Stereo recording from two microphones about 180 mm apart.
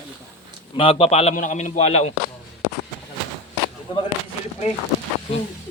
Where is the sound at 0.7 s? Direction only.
30° left (ahead or behind).